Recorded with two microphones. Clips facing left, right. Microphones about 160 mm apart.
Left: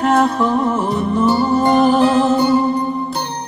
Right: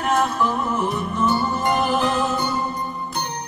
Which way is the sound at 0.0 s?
30° left (ahead or behind).